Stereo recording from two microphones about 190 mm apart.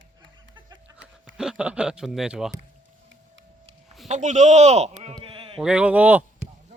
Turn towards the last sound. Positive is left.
turn(degrees=-10)  # may be behind; listen again after turning